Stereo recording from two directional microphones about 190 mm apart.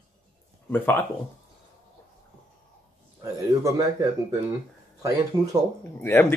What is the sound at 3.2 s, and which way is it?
Speech, 15° right (ahead or behind).